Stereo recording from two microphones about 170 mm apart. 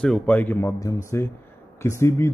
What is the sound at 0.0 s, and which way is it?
Speech, 5° left (ahead or behind).